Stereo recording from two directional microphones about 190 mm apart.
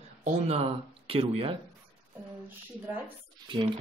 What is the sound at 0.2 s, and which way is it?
Speech, 35° right (ahead or behind).